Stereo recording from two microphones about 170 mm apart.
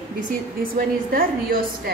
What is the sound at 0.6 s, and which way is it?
A woman's voice, 60° right (ahead or behind).